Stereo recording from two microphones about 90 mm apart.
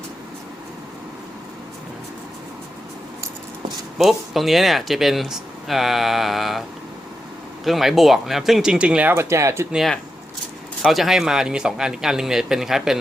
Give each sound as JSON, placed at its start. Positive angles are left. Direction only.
{"t": 3.9, "sound": "speech", "side_deg": 0}
{"t": 9.1, "sound": "speech", "side_deg": -30}
{"t": 10.9, "sound": "speech", "side_deg": 0}